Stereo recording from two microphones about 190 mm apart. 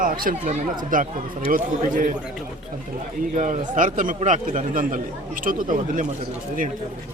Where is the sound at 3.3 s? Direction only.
40° right (ahead or behind).